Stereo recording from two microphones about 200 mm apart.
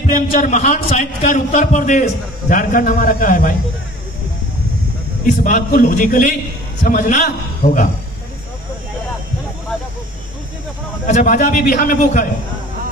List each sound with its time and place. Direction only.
0.0 s a man's voice: 35° left (ahead or behind)
5.2 s a man's voice: 40° left (ahead or behind)
11.1 s a man's voice: 40° left (ahead or behind)